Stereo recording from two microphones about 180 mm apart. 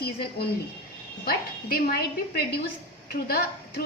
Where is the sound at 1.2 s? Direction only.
60° left (ahead or behind).